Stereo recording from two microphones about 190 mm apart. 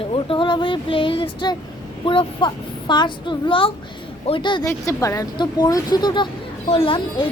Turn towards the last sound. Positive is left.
turn(degrees=25)  # may be behind; listen again after turning